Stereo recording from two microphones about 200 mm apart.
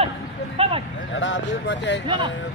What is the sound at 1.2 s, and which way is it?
Speech, 65° left (ahead or behind).